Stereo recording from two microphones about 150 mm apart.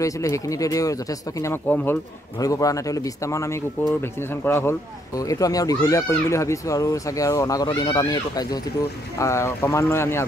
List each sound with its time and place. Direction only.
0.0 s speech: 20° left (ahead or behind)
4.5 s speech: 15° left (ahead or behind)